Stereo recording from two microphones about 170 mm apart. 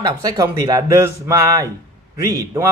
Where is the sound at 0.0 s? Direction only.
20° right (ahead or behind).